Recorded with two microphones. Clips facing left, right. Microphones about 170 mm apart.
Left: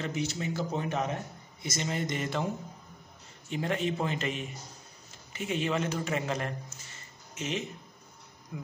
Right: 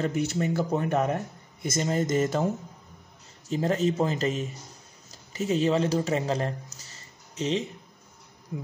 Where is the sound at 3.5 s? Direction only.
35° right (ahead or behind).